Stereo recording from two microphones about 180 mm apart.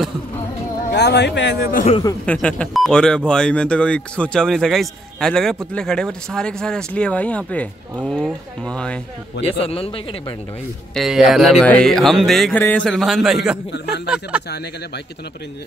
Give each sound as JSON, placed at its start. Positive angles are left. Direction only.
{"t": 0.9, "sound": "a man's voice", "side_deg": 70}
{"t": 1.9, "sound": "speech", "side_deg": 25}
{"t": 2.2, "sound": "speech", "side_deg": 5}
{"t": 9.4, "sound": "speech", "side_deg": 35}
{"t": 11.0, "sound": "speech", "side_deg": 0}